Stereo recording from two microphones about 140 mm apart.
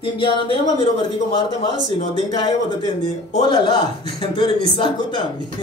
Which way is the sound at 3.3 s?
35° left (ahead or behind).